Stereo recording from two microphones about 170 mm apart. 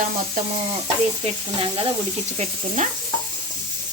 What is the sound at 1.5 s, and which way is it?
Sizzle, 35° right (ahead or behind).